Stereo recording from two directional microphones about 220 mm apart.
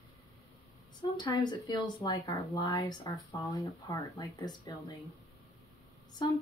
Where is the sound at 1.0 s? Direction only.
20° left (ahead or behind).